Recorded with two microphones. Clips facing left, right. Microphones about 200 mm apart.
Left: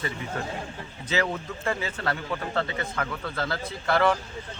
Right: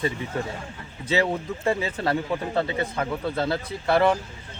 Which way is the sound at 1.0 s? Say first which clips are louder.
Right 4 dB; 25° right (ahead or behind).